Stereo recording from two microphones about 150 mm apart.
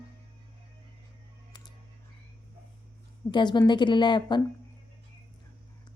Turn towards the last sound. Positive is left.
turn(degrees=30)  # may be behind; listen again after turning